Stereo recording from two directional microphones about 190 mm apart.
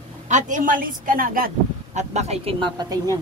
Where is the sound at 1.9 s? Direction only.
35° right (ahead or behind).